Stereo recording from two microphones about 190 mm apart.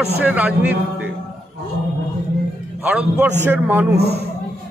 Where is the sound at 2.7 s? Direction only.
10° right (ahead or behind).